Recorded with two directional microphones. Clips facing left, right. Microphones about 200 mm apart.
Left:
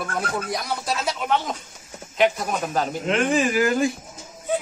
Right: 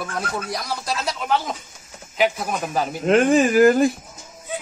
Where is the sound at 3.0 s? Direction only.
45° right (ahead or behind).